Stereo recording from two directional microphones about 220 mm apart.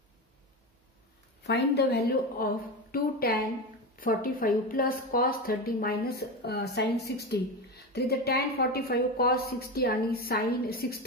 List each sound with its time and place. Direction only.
1.4 s a woman's voice: 50° left (ahead or behind)